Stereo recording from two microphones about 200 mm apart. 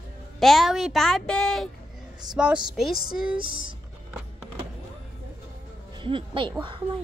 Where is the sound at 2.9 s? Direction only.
50° left (ahead or behind).